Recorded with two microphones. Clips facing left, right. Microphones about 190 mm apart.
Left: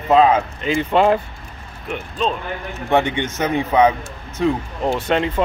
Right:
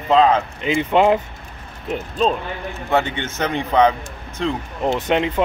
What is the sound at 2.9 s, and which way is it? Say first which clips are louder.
A man's voice: left 3 dB; 15° left (ahead or behind).